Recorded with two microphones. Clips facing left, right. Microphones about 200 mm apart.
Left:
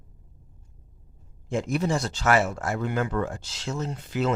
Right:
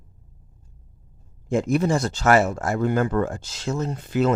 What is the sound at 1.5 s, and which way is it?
Speech, 50° right (ahead or behind).